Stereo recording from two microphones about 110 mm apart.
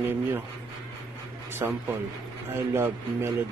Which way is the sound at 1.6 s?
25° right (ahead or behind).